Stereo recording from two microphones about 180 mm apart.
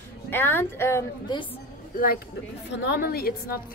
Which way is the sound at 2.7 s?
70° left (ahead or behind).